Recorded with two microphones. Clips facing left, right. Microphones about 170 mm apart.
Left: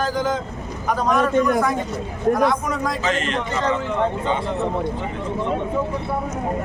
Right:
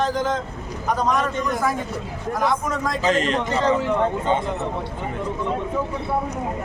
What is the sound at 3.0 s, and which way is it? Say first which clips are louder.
Speech: right 6 dB; 35° right (ahead or behind).